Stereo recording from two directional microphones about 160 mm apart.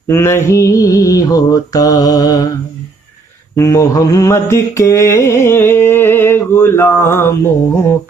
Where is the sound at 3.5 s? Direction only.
20° left (ahead or behind).